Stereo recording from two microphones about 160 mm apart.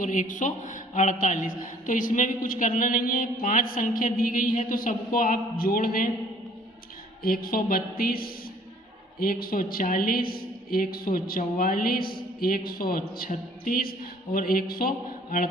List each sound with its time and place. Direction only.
0.0 s a man's voice: 55° left (ahead or behind)
7.2 s a man's voice: 65° left (ahead or behind)